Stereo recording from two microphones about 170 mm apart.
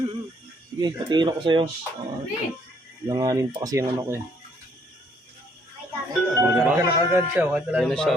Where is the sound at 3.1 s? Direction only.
20° right (ahead or behind).